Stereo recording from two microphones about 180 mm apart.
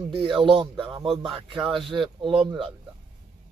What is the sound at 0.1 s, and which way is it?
Speech, 30° right (ahead or behind).